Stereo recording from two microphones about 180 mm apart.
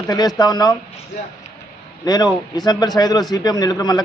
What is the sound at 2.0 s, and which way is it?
A man's voice, 20° left (ahead or behind).